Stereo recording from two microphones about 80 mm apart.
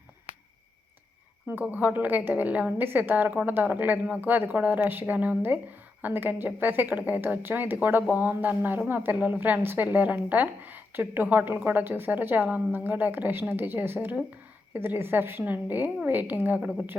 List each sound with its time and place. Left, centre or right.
1.7 s a woman's voice: right
4.2 s a woman's voice: right